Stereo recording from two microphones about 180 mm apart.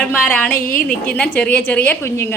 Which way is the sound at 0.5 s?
50° left (ahead or behind).